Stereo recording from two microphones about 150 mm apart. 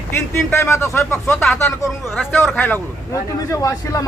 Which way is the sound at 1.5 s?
15° left (ahead or behind).